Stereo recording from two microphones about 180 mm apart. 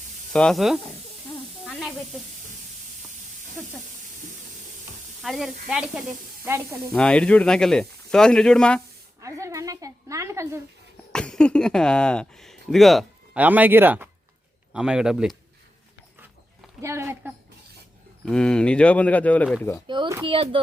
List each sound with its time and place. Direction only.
0.3 s speech: centre (ahead or behind)
5.2 s speech: centre (ahead or behind)
6.9 s speech: 5° left (ahead or behind)
9.2 s a woman's voice: 15° right (ahead or behind)
11.1 s speech: 5° left (ahead or behind)
16.8 s a woman's voice: 15° right (ahead or behind)
18.3 s speech: 5° left (ahead or behind)
19.9 s speech: 25° right (ahead or behind)